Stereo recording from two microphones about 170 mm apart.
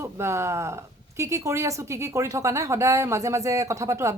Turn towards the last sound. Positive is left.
turn(degrees=-20)  # may be behind; listen again after turning